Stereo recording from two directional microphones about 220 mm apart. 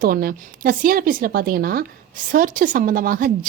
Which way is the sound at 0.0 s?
40° right (ahead or behind).